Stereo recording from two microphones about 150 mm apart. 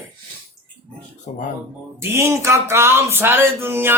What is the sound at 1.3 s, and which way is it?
Speech, 60° left (ahead or behind).